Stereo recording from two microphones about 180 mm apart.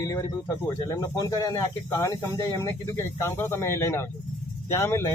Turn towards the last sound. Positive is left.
turn(degrees=15)  # may be behind; listen again after turning